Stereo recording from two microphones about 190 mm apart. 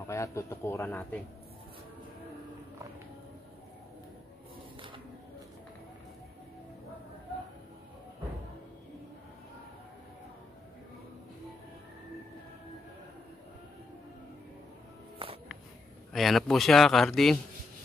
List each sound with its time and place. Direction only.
0.0 s a man's voice: 15° left (ahead or behind)
15.2 s music: 30° right (ahead or behind)
16.1 s a man's voice: centre (ahead or behind)